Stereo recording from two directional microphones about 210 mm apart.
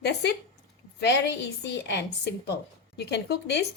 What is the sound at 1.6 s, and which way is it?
A woman's voice, 55° left (ahead or behind).